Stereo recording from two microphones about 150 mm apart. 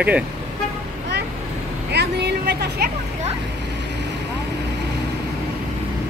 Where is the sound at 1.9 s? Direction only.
90° right.